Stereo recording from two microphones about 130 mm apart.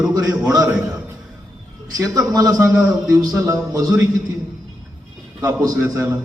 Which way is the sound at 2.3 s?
30° right (ahead or behind).